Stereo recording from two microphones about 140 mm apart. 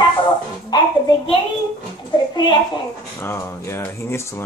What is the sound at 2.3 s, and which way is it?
Speech, 35° left (ahead or behind).